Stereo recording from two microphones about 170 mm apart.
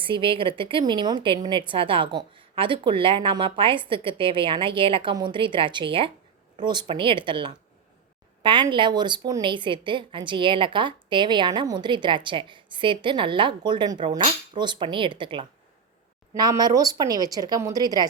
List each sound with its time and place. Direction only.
0.0 s a woman's voice: 30° right (ahead or behind)